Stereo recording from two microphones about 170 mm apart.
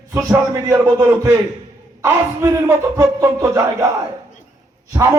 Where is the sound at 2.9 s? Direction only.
15° right (ahead or behind).